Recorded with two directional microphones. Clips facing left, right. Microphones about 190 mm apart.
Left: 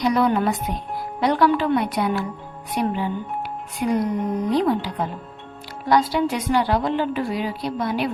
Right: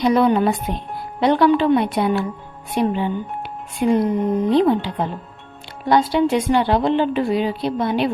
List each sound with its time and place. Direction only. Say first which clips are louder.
0.0 s a woman's voice: right 4 dB; 25° right (ahead or behind)